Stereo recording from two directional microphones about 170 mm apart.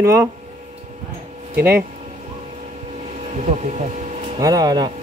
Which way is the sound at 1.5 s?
10° right (ahead or behind).